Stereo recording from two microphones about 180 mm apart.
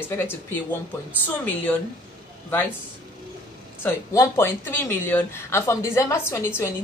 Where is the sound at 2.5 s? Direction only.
10° left (ahead or behind).